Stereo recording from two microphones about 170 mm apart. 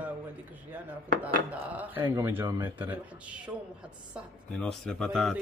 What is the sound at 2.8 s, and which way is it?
Speech, 10° right (ahead or behind).